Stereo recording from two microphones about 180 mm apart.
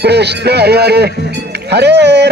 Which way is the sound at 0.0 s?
65° right (ahead or behind).